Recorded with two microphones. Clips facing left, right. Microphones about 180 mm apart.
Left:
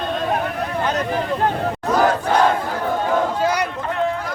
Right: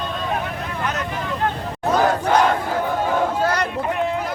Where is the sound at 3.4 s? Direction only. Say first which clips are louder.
Left 1 dB; 10° left (ahead or behind).